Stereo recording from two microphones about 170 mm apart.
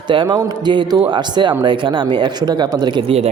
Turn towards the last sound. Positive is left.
turn(degrees=-35)  # may be behind; listen again after turning